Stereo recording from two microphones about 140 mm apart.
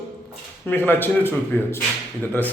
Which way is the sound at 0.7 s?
15° left (ahead or behind).